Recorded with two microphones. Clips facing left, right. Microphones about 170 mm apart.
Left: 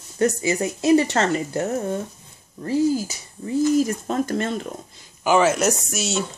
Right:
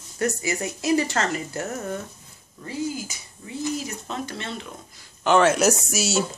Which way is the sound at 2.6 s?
40° left (ahead or behind).